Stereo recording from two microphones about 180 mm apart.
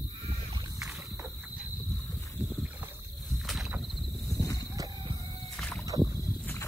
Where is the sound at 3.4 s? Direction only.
Centre (ahead or behind).